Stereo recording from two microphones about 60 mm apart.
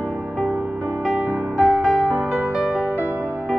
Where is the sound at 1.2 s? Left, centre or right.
Centre.